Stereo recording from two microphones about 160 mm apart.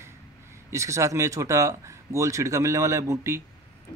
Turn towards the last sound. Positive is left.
turn(degrees=-20)  # may be behind; listen again after turning